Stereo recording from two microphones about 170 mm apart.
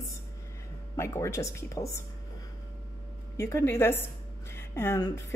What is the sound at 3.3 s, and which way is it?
Speech, 15° left (ahead or behind).